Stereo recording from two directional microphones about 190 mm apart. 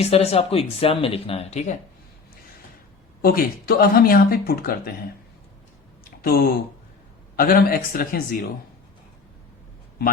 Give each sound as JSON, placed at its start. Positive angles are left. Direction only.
{"t": 0.0, "sound": "speech", "side_deg": 35}
{"t": 3.2, "sound": "speech", "side_deg": 50}
{"t": 6.2, "sound": "speech", "side_deg": 50}